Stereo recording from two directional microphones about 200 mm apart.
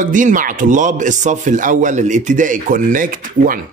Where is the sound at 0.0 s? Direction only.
40° right (ahead or behind).